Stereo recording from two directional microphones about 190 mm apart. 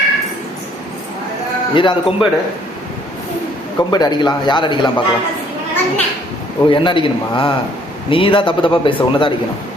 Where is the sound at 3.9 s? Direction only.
20° left (ahead or behind).